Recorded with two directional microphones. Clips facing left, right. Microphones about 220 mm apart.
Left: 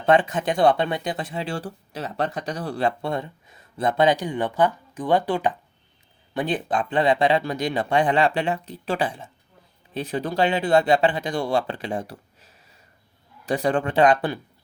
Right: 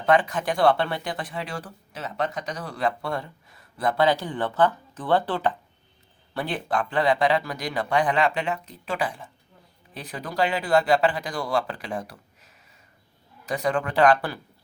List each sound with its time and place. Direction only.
0.0 s speech: 25° left (ahead or behind)